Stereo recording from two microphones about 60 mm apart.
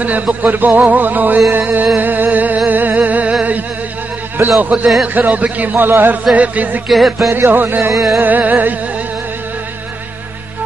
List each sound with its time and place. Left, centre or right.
0.0 s a man's voice: right
1.5 s music: right
4.6 s a man's voice: right
5.9 s music: right
6.3 s a man's voice: right
6.9 s music: centre
7.3 s music: right
7.9 s music: centre
8.2 s a man's voice: right